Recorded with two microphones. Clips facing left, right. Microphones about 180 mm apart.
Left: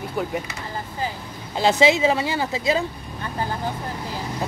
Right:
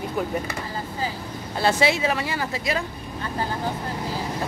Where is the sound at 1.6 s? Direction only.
20° left (ahead or behind).